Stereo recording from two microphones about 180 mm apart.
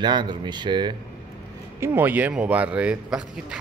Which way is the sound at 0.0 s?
25° right (ahead or behind).